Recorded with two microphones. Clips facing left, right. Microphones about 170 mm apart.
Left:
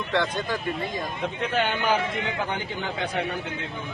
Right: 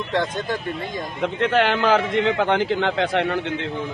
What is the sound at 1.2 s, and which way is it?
A man's voice, 90° right.